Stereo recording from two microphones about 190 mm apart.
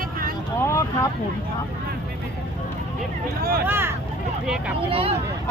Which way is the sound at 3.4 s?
50° right (ahead or behind).